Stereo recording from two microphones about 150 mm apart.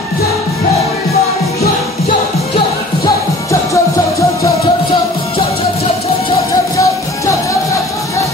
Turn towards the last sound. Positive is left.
turn(degrees=20)  # may be behind; listen again after turning